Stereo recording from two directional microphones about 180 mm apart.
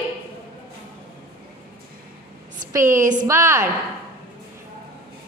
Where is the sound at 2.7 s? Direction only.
15° right (ahead or behind).